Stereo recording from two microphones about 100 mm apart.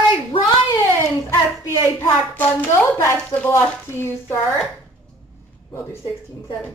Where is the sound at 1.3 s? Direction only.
25° left (ahead or behind).